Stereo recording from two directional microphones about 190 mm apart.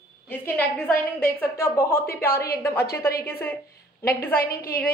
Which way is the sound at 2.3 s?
55° left (ahead or behind).